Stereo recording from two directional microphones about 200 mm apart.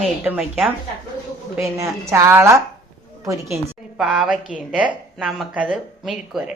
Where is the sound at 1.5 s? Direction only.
15° right (ahead or behind).